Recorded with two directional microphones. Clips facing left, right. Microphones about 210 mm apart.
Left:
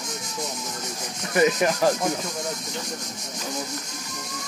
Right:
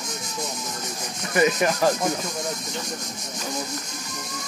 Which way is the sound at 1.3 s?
30° left (ahead or behind).